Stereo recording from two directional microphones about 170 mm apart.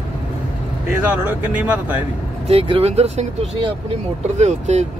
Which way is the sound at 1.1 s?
10° right (ahead or behind).